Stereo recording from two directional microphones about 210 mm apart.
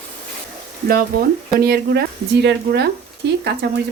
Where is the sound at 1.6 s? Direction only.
50° right (ahead or behind).